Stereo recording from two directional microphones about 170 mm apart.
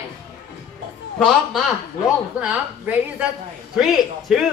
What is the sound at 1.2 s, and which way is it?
A man's voice, centre (ahead or behind).